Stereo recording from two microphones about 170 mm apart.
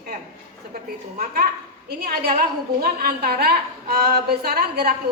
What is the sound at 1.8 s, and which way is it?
A woman's voice, 65° right (ahead or behind).